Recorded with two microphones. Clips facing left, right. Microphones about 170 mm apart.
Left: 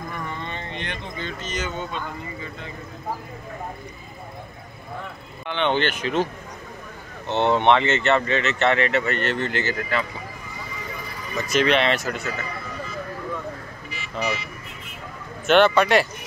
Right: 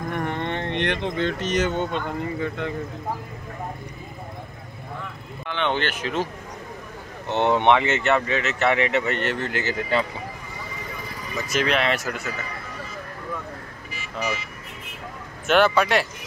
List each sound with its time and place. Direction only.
0.1 s speech: 65° right (ahead or behind)
5.5 s speech: 5° right (ahead or behind)
7.2 s speech: 15° right (ahead or behind)
9.8 s speech: 30° right (ahead or behind)
11.3 s speech: 5° right (ahead or behind)
15.4 s speech: 5° right (ahead or behind)